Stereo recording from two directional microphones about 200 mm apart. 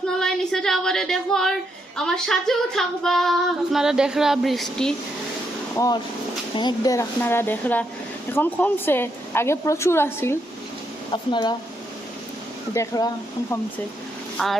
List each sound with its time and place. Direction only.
0.1 s female singing: 5° left (ahead or behind)
2.0 s child singing: 5° left (ahead or behind)
5.7 s a woman's voice: 15° left (ahead or behind)
11.1 s speech: 25° left (ahead or behind)
12.7 s a woman's voice: 15° left (ahead or behind)
14.3 s child singing: centre (ahead or behind)